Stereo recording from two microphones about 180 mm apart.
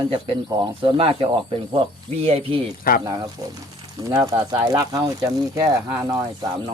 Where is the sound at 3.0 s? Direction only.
20° right (ahead or behind).